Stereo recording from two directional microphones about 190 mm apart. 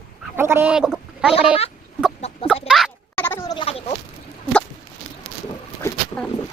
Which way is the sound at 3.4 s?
25° left (ahead or behind).